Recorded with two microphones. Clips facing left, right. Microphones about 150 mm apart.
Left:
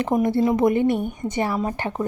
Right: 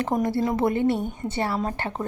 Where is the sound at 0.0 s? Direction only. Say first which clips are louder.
Left 4 dB; 20° left (ahead or behind).